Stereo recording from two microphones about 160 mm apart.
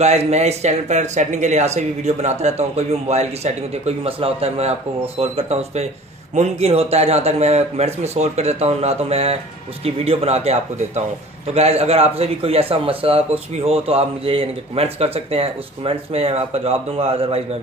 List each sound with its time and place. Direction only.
0.0 s speech: 40° right (ahead or behind)